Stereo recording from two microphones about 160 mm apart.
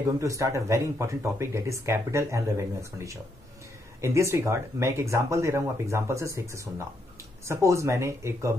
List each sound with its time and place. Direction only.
0.2 s speech: 20° right (ahead or behind)